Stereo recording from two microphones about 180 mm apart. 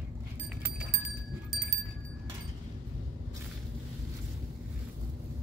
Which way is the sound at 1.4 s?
Centre (ahead or behind).